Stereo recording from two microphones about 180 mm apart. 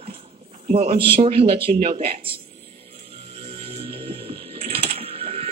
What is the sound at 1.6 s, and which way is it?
Speech, 55° right (ahead or behind).